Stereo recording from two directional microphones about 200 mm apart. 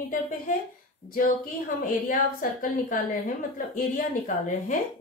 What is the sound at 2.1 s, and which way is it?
A woman's voice, 45° left (ahead or behind).